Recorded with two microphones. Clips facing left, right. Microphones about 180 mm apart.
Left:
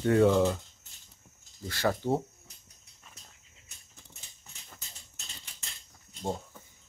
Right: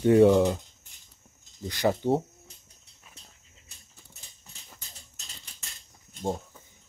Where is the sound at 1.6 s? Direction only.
15° right (ahead or behind).